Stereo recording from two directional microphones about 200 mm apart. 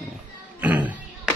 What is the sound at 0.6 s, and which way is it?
Music, 10° right (ahead or behind).